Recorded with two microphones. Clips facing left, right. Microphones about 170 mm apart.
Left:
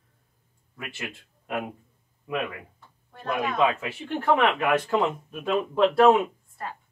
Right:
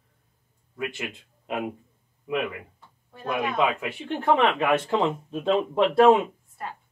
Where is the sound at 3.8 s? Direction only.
20° right (ahead or behind).